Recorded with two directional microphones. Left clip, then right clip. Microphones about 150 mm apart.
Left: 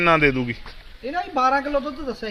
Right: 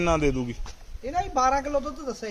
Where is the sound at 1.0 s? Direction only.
35° right (ahead or behind).